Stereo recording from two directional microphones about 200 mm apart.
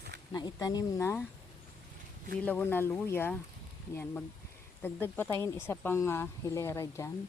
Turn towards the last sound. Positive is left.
turn(degrees=15)  # may be behind; listen again after turning